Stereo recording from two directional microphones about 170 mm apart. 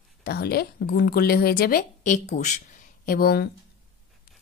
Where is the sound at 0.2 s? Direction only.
65° left (ahead or behind).